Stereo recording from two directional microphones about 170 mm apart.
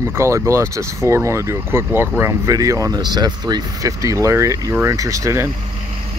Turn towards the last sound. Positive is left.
turn(degrees=-15)  # may be behind; listen again after turning